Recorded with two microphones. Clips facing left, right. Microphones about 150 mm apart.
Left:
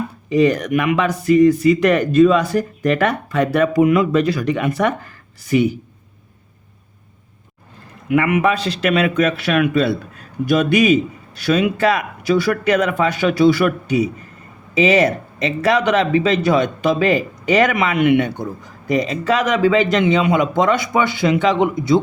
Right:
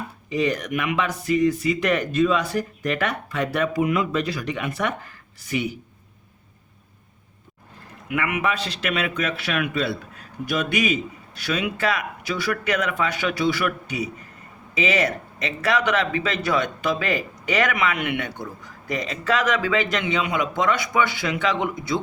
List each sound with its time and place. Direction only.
0.3 s a man's voice: 45° left (ahead or behind)
8.1 s a man's voice: 35° left (ahead or behind)